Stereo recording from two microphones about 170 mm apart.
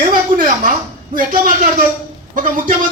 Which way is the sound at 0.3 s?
55° right (ahead or behind).